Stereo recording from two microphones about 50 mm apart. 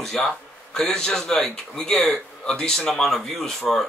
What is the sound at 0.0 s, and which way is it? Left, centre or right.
A man's voice, centre.